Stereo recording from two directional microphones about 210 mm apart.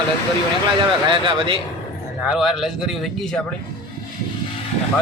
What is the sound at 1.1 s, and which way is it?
Speech, 25° right (ahead or behind).